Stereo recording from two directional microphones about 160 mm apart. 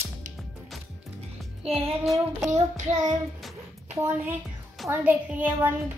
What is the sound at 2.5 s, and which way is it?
Child singing, 50° right (ahead or behind).